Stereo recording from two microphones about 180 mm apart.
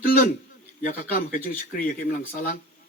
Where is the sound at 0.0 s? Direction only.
50° left (ahead or behind).